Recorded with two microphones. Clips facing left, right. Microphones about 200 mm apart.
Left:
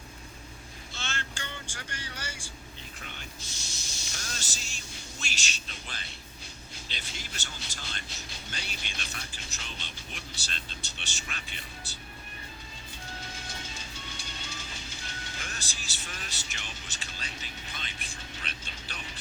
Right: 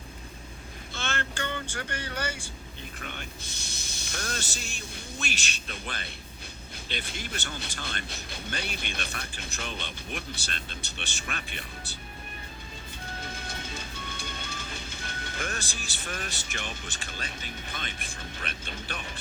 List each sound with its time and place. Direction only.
0.9 s vehicle: 55° right (ahead or behind)
3.2 s speech: 60° right (ahead or behind)
13.1 s music: 55° right (ahead or behind)